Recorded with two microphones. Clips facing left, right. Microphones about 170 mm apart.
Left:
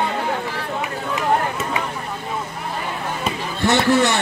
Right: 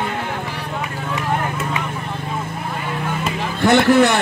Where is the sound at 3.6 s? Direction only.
55° right (ahead or behind).